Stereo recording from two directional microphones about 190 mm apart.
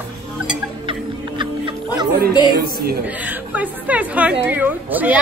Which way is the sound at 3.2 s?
10° right (ahead or behind).